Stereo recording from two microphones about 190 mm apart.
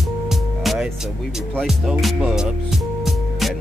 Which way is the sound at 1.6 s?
Centre (ahead or behind).